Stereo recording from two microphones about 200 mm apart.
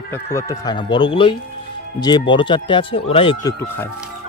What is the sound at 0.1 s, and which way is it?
Speech, 15° left (ahead or behind).